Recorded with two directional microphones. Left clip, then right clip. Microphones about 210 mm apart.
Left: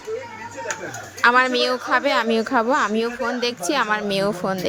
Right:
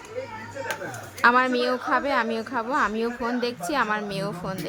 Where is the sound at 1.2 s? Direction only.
35° left (ahead or behind).